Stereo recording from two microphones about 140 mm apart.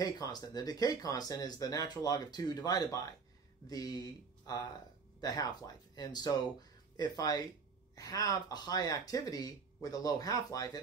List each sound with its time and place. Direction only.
0.0 s speech: 30° left (ahead or behind)